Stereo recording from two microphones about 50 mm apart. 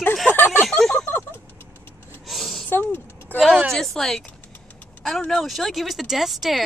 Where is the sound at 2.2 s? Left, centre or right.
Centre.